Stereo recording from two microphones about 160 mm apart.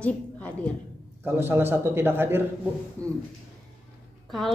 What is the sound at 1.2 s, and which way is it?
A man's voice, 15° right (ahead or behind).